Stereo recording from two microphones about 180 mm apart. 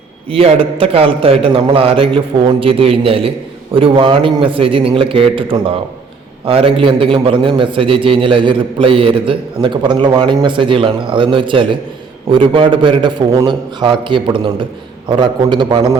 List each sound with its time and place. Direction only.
0.3 s a man's voice: 30° right (ahead or behind)